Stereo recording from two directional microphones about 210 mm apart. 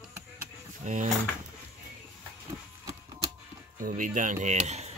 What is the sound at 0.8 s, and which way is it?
Speech, 35° right (ahead or behind).